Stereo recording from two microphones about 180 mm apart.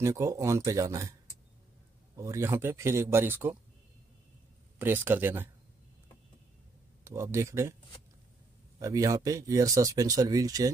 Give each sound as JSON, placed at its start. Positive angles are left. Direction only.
{"t": 0.0, "sound": "speech", "side_deg": -15}
{"t": 2.1, "sound": "speech", "side_deg": -15}
{"t": 4.7, "sound": "speech", "side_deg": -10}
{"t": 7.1, "sound": "speech", "side_deg": -15}
{"t": 8.7, "sound": "speech", "side_deg": -20}